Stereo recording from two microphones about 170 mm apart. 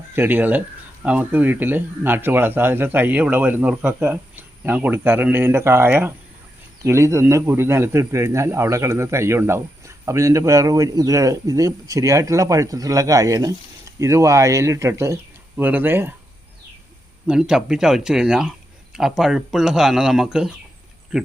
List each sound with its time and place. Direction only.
0.2 s a man's voice: 10° right (ahead or behind)
17.2 s speech: 5° right (ahead or behind)